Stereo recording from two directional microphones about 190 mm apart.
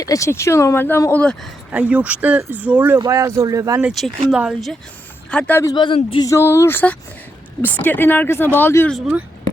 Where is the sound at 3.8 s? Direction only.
Centre (ahead or behind); by 6.3 s 25° left (ahead or behind).